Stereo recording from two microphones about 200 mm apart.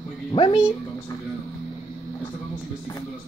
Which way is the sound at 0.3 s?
25° left (ahead or behind).